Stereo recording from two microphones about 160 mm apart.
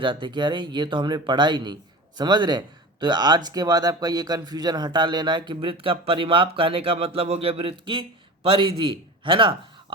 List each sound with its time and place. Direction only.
0.0 s a man's voice: 30° right (ahead or behind)